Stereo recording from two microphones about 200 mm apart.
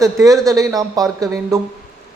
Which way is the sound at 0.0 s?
15° right (ahead or behind).